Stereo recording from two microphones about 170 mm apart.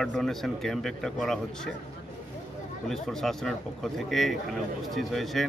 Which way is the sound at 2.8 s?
5° left (ahead or behind).